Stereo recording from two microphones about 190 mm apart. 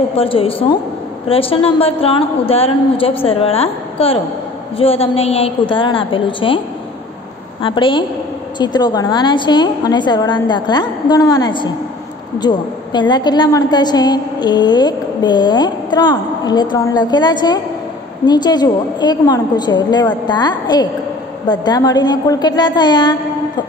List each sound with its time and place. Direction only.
0.1 s a woman's voice: 30° left (ahead or behind)
7.6 s a woman's voice: 25° left (ahead or behind)